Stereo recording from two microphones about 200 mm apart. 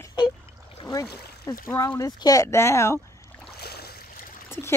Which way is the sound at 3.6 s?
55° left (ahead or behind).